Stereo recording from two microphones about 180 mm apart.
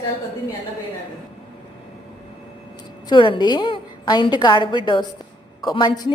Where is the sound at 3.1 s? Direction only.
25° left (ahead or behind).